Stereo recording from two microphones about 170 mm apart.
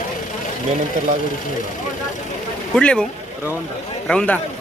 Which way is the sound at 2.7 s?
5° left (ahead or behind).